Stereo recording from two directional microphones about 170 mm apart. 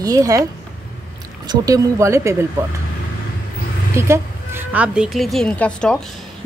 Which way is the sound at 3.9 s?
15° right (ahead or behind).